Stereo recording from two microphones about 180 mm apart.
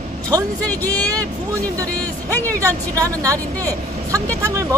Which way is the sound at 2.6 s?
20° right (ahead or behind).